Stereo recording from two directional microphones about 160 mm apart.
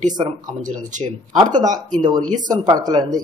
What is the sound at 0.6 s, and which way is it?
Speech, 50° right (ahead or behind).